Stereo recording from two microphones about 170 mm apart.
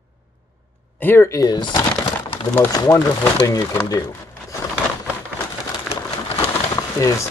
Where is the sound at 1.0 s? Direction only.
15° left (ahead or behind).